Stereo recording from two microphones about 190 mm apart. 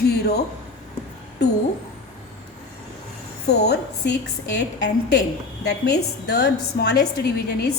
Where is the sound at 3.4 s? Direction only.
60° left (ahead or behind).